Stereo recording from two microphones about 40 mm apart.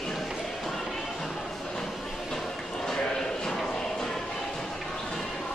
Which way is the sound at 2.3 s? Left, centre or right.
Centre.